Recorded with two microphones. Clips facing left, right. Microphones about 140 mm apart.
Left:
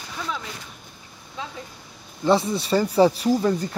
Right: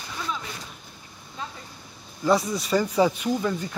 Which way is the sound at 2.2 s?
30° left (ahead or behind).